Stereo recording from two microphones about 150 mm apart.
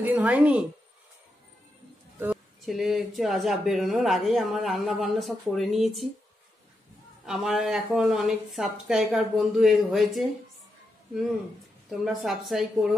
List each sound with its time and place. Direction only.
0.0 s speech: 10° right (ahead or behind)
2.2 s speech: centre (ahead or behind)
7.2 s speech: centre (ahead or behind)
11.9 s speech: centre (ahead or behind)